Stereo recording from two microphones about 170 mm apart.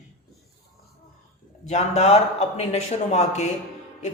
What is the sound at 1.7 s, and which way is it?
Speech, 40° left (ahead or behind).